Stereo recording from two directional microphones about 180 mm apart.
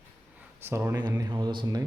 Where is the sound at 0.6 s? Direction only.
15° right (ahead or behind).